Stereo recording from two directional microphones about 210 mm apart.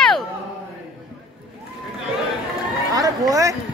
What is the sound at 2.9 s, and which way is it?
Chatter, 15° right (ahead or behind).